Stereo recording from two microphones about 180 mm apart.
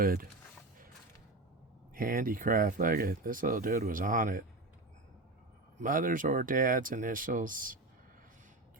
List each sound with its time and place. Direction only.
0.0 s speech: 55° right (ahead or behind)
2.0 s speech: 50° right (ahead or behind)
5.8 s speech: 50° right (ahead or behind)